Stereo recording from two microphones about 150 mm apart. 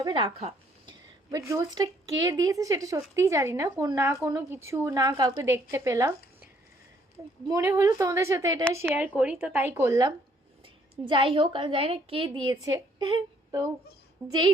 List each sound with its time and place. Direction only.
0.0 s a woman's voice: 30° right (ahead or behind)
0.9 s a woman's voice: 25° right (ahead or behind)
9.1 s speech: 10° right (ahead or behind)
11.0 s a woman's voice: 35° right (ahead or behind)